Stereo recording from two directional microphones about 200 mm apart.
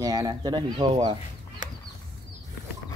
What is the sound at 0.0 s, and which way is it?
Speech, 15° right (ahead or behind).